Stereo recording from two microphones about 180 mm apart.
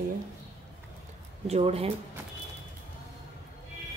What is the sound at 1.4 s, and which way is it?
Speech, 35° right (ahead or behind).